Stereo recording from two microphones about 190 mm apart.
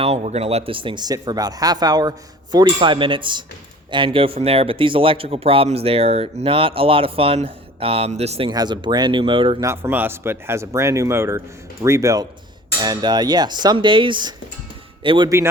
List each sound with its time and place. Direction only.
0.0 s speech: 35° right (ahead or behind)
8.4 s speech: 20° right (ahead or behind)
9.6 s speech: 10° right (ahead or behind)